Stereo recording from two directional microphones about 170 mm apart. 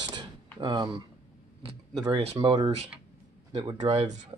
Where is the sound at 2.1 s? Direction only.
35° right (ahead or behind).